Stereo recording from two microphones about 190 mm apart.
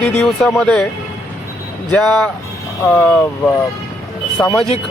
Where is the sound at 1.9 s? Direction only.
5° left (ahead or behind).